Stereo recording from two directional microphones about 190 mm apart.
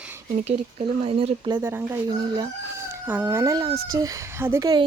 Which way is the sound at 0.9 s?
30° right (ahead or behind).